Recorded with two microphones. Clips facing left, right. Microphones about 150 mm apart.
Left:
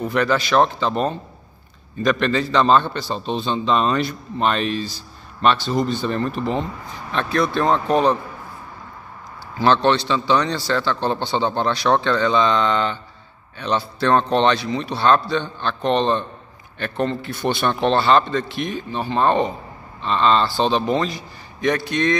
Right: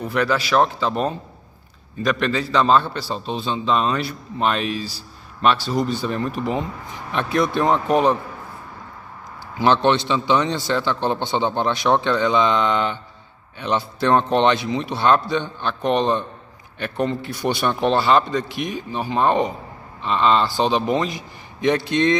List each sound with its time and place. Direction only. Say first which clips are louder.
0.0 s a man's voice: left 1 dB; 5° right (ahead or behind)
9.6 s a man's voice: even; 15° right (ahead or behind)